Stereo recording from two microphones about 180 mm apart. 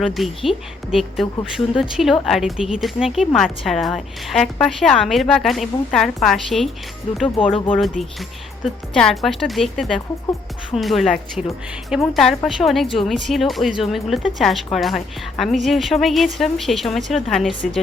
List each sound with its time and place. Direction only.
0.0 s a woman's voice: centre (ahead or behind)
7.3 s speech: 30° left (ahead or behind)
8.9 s a woman's voice: centre (ahead or behind)